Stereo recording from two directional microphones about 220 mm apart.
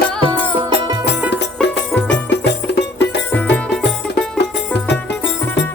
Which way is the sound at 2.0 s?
55° left (ahead or behind).